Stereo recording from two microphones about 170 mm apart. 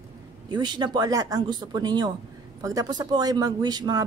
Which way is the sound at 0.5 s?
25° right (ahead or behind).